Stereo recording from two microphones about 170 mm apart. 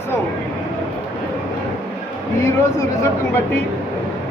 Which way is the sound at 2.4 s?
15° left (ahead or behind).